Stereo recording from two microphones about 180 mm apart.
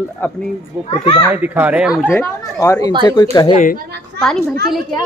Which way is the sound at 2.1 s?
15° left (ahead or behind).